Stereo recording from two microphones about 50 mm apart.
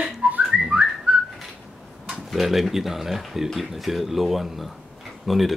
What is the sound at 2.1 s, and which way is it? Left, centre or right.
Speech, centre.